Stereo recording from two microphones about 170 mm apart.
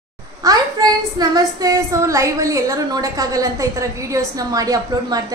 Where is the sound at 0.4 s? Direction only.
20° right (ahead or behind).